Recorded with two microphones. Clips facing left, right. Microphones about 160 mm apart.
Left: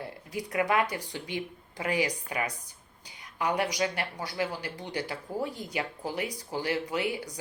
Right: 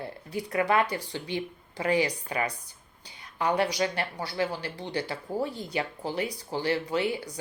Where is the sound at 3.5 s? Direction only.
15° left (ahead or behind).